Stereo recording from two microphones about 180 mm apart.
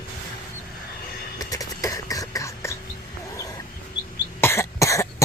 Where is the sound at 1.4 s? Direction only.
20° left (ahead or behind).